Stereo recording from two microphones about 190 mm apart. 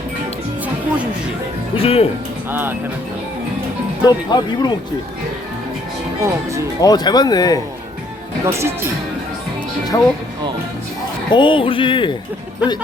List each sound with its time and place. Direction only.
1.7 s speech: 30° left (ahead or behind)
2.5 s speech: 10° right (ahead or behind)
4.0 s speech: 20° left (ahead or behind)
6.8 s speech: 20° left (ahead or behind)
8.4 s speech: 15° right (ahead or behind)
9.9 s speech: 20° left (ahead or behind)
11.3 s speech: 25° left (ahead or behind)